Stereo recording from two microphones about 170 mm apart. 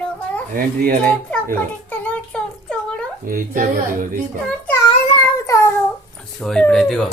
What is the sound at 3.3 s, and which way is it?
Speech, 50° right (ahead or behind).